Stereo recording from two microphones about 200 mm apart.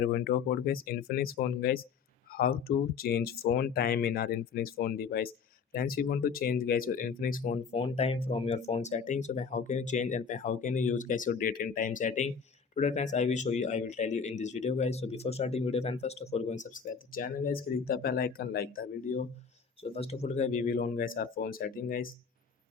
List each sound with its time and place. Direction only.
0.0 s speech: 50° left (ahead or behind)
19.8 s speech: 30° left (ahead or behind); by 22.1 s 45° left (ahead or behind)